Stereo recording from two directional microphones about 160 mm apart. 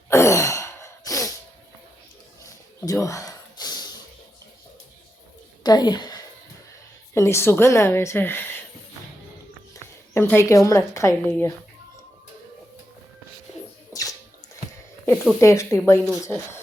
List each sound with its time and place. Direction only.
0.1 s sigh: 20° left (ahead or behind)
2.4 s a sound: 20° left (ahead or behind)
5.6 s a woman's voice: 25° left (ahead or behind)
9.7 s a woman's voice: 15° left (ahead or behind)
13.9 s bathtub: 20° left (ahead or behind)
15.1 s speech: 5° right (ahead or behind)
15.4 s a woman's voice: 20° left (ahead or behind)